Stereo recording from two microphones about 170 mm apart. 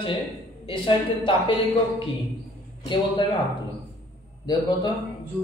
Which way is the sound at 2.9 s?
25° left (ahead or behind).